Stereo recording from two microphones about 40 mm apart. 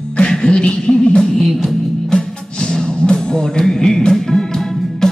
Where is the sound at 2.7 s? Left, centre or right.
Centre.